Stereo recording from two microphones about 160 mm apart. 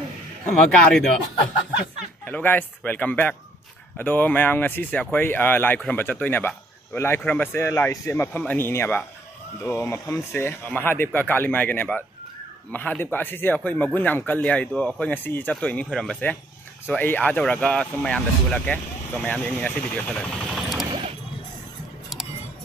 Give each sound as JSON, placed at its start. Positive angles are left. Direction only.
{"t": 0.7, "sound": "speech", "side_deg": 0}
{"t": 2.2, "sound": "speech", "side_deg": 10}
{"t": 13.0, "sound": "speech", "side_deg": 10}
{"t": 20.8, "sound": "vehicle", "side_deg": -30}